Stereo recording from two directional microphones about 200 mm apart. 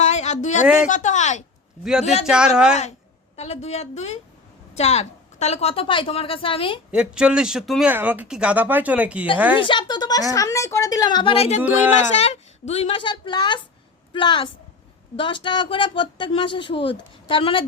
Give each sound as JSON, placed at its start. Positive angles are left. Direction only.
{"t": 0.0, "sound": "a sound", "side_deg": 35}
{"t": 0.9, "sound": "speech", "side_deg": 40}
{"t": 1.8, "sound": "speech", "side_deg": -5}
{"t": 3.3, "sound": "a woman's voice", "side_deg": 30}
{"t": 6.9, "sound": "speech", "side_deg": -5}
{"t": 9.6, "sound": "a woman's voice", "side_deg": 25}